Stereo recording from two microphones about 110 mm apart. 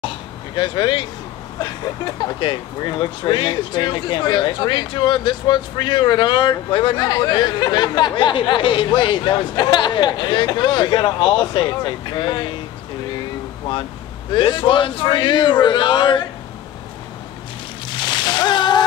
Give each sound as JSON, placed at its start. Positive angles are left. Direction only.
{"t": 0.6, "sound": "speech", "side_deg": 45}
{"t": 14.3, "sound": "speech", "side_deg": 45}
{"t": 17.8, "sound": "a sound", "side_deg": 45}